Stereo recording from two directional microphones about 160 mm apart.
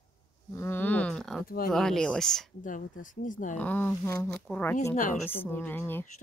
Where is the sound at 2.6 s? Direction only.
55° left (ahead or behind).